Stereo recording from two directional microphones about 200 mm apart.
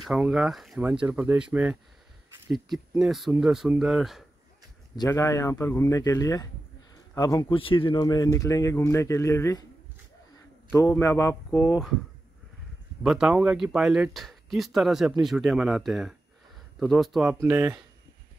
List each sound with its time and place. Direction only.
0.1 s speech: 5° right (ahead or behind)
4.9 s speech: 20° left (ahead or behind)
10.7 s speech: 10° left (ahead or behind)
13.0 s speech: 5° right (ahead or behind)